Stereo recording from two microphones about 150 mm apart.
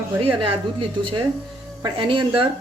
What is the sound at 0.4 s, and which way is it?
Speech, 35° right (ahead or behind).